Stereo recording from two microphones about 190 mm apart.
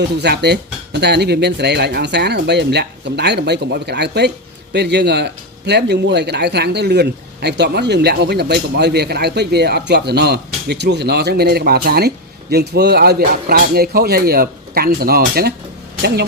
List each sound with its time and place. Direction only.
0.2 s speech: 60° right (ahead or behind)